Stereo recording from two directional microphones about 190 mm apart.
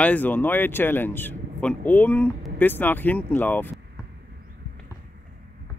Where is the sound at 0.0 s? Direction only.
10° left (ahead or behind).